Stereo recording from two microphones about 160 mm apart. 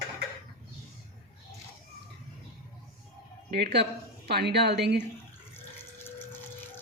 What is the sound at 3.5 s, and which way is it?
A woman's voice, 90° right.